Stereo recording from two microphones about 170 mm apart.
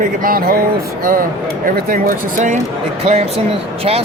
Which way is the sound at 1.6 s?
55° right (ahead or behind).